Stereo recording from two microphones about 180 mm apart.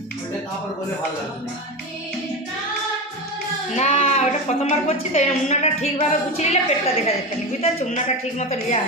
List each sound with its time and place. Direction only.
3.8 s a woman's voice: 35° left (ahead or behind)